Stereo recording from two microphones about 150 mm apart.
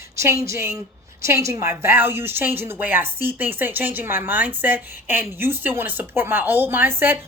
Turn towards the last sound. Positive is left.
turn(degrees=-15)  # may be behind; listen again after turning